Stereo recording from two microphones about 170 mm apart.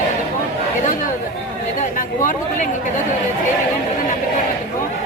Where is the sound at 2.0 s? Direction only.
50° left (ahead or behind).